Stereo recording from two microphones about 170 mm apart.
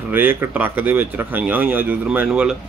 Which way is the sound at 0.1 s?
10° right (ahead or behind).